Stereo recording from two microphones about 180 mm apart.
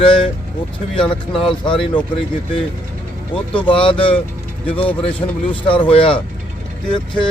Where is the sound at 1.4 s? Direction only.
30° left (ahead or behind).